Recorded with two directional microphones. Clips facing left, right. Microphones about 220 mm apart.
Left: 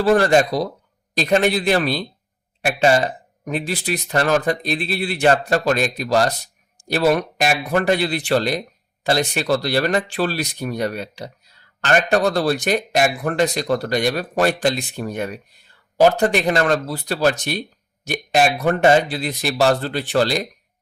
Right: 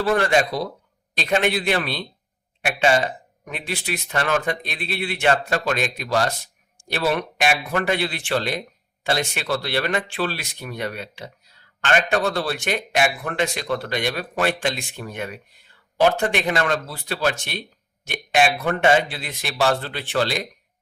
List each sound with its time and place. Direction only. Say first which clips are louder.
0.0 s speech: left 5 dB; 35° left (ahead or behind)